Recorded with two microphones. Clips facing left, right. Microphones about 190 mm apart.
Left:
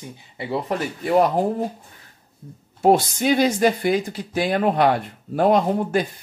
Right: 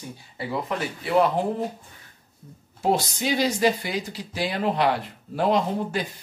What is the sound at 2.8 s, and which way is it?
Speech, 55° left (ahead or behind).